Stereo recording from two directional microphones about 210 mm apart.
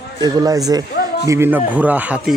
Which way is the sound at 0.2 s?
15° right (ahead or behind).